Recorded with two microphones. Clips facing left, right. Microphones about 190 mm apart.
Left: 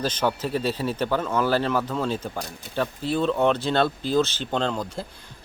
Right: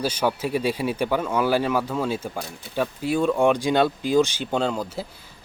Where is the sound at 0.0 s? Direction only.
10° right (ahead or behind).